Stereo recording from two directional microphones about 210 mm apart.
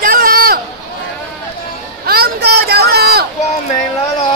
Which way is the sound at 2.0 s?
50° right (ahead or behind).